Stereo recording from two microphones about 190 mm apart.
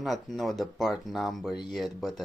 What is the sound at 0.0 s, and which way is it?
Speech, centre (ahead or behind).